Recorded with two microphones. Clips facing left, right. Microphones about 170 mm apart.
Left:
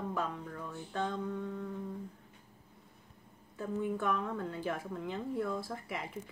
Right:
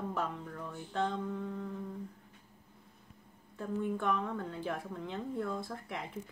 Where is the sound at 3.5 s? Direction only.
5° left (ahead or behind).